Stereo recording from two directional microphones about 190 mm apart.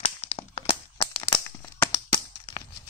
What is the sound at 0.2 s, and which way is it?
Crack, 30° left (ahead or behind).